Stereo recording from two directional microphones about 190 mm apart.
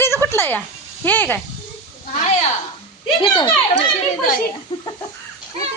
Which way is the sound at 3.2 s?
25° left (ahead or behind).